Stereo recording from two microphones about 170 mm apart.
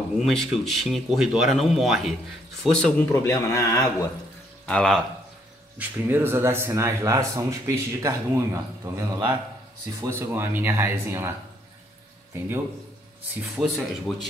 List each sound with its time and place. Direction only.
0.2 s speech: centre (ahead or behind); by 3.8 s 15° left (ahead or behind)
4.6 s speech: 5° left (ahead or behind)
5.8 s speech: 10° right (ahead or behind)
13.6 s speech: centre (ahead or behind)